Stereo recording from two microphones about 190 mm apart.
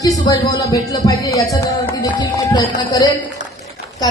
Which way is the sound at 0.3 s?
20° left (ahead or behind).